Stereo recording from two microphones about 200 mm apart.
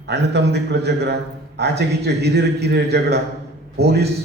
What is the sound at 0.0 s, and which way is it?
A man's voice, 60° right (ahead or behind).